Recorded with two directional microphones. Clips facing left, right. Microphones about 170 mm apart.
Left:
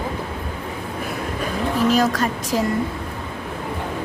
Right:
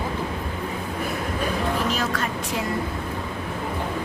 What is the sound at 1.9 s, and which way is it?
Speech, 40° left (ahead or behind).